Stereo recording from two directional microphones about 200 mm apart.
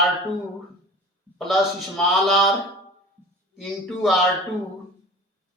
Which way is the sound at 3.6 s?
Centre (ahead or behind).